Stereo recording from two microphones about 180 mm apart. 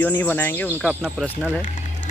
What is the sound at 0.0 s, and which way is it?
Speech, 10° left (ahead or behind).